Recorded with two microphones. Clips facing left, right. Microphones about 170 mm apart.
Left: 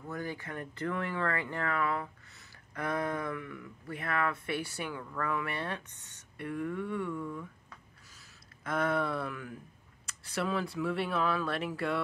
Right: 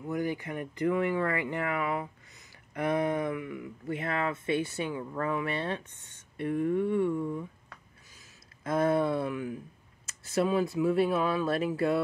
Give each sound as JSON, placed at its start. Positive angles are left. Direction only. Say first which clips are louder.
{"t": 0.1, "sound": "speech", "louder": "right 7 dB", "side_deg": -15}
{"t": 3.8, "sound": "speech", "louder": "right 2 dB", "side_deg": -25}
{"t": 8.6, "sound": "speech", "louder": "right 5 dB", "side_deg": -25}